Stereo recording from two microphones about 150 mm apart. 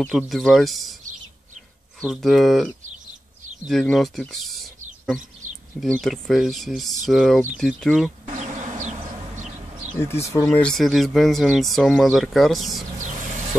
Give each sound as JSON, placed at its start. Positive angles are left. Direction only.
{"t": 0.0, "sound": "speech", "side_deg": 0}
{"t": 2.0, "sound": "speech", "side_deg": 0}
{"t": 5.8, "sound": "speech", "side_deg": 0}
{"t": 8.4, "sound": "bee", "side_deg": -55}
{"t": 9.4, "sound": "a sound", "side_deg": -50}
{"t": 10.5, "sound": "speech", "side_deg": 5}
{"t": 12.9, "sound": "vehicle", "side_deg": -55}